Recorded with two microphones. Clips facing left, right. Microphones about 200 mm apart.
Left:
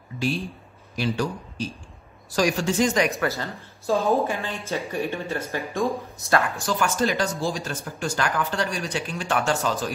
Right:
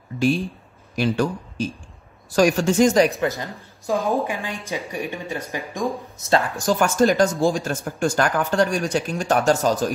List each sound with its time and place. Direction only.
0.9 s speech: 50° right (ahead or behind)
3.2 s speech: 15° right (ahead or behind)
6.6 s speech: 45° right (ahead or behind)